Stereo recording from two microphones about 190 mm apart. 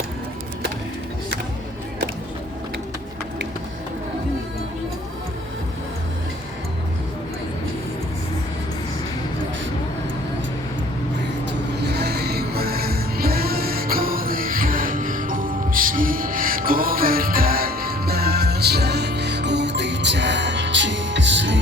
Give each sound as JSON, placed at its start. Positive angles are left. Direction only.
{"t": 11.8, "sound": "music", "side_deg": -60}